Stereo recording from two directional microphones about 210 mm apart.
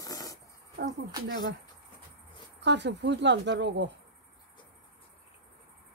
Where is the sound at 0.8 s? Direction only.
50° right (ahead or behind).